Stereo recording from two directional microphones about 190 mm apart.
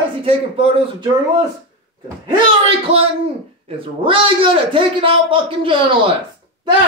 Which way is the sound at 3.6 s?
30° right (ahead or behind).